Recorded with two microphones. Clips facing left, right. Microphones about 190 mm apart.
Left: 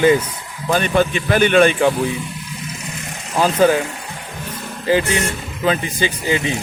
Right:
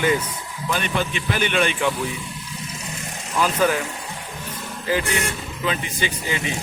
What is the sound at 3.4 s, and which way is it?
Speech, 30° left (ahead or behind).